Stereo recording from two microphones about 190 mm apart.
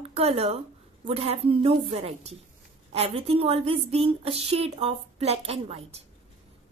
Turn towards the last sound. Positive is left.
turn(degrees=-30)  # may be behind; listen again after turning